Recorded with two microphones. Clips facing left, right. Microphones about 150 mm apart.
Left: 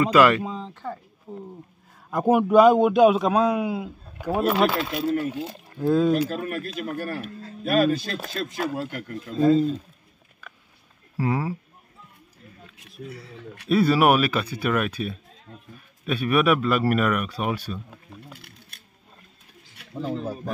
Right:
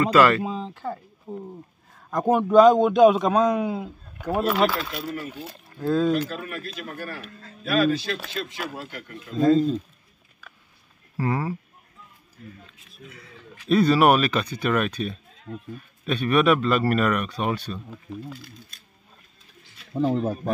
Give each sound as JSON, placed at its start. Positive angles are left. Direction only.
{"t": 0.0, "sound": "a man's voice", "side_deg": 15}
{"t": 0.7, "sound": "a sound", "side_deg": -5}
{"t": 1.3, "sound": "a sound", "side_deg": -20}
{"t": 2.0, "sound": "a man's voice", "side_deg": 10}
{"t": 4.6, "sound": "a man's voice", "side_deg": 25}
{"t": 6.2, "sound": "speech", "side_deg": 40}
{"t": 9.4, "sound": "speech", "side_deg": 5}
{"t": 11.1, "sound": "a man's voice", "side_deg": 10}
{"t": 12.7, "sound": "a sound", "side_deg": 85}
{"t": 13.7, "sound": "a man's voice", "side_deg": 10}
{"t": 18.7, "sound": "a sound", "side_deg": 65}
{"t": 20.0, "sound": "speech", "side_deg": -45}